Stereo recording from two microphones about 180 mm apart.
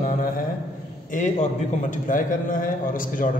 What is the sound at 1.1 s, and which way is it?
A man's voice, 45° left (ahead or behind).